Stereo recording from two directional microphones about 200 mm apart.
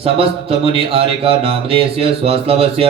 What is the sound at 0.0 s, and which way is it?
A man's voice, 30° right (ahead or behind).